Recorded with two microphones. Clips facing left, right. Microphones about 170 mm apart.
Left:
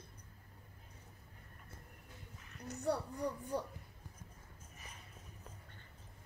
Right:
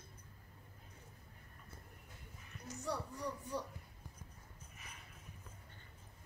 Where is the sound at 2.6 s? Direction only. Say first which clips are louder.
Left 5 dB; 55° left (ahead or behind).